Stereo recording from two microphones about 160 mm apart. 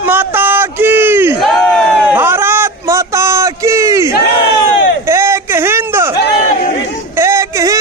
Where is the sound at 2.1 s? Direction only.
15° right (ahead or behind).